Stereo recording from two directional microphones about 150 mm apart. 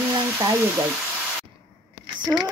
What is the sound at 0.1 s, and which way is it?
Frying, 20° right (ahead or behind).